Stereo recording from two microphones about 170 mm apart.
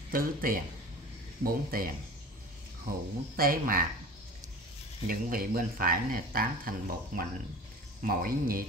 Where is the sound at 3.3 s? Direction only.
60° right (ahead or behind).